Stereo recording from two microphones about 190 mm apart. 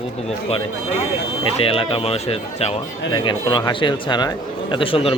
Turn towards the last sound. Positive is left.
turn(degrees=30)  # may be behind; listen again after turning